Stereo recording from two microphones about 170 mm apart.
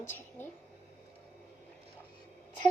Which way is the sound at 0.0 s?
15° left (ahead or behind).